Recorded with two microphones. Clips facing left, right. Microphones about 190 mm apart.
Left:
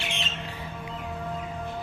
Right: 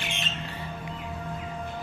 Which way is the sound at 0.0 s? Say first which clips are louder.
Left 1 dB; 50° right (ahead or behind).